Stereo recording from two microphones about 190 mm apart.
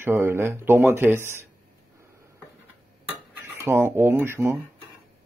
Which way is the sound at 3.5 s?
10° right (ahead or behind).